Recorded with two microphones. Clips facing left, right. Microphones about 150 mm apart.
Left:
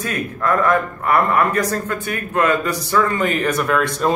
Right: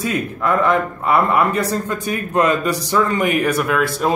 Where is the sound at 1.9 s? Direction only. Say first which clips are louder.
Right 2 dB; 15° right (ahead or behind).